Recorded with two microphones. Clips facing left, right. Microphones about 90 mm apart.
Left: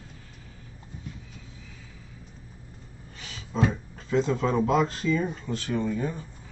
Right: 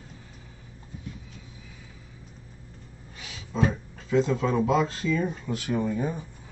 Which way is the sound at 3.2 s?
10° right (ahead or behind).